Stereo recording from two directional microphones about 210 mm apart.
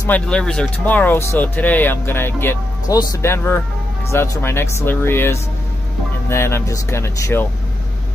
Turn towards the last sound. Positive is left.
turn(degrees=10)  # may be behind; listen again after turning